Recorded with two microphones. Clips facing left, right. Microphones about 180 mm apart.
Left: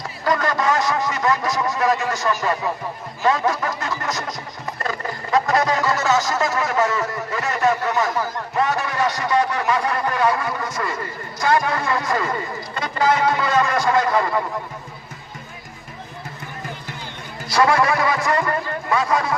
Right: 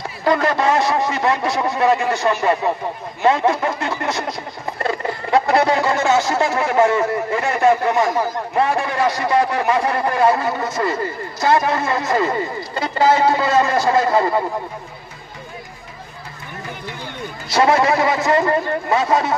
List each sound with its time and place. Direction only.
0.3 s speech: 25° right (ahead or behind)
17.5 s speech: 25° right (ahead or behind)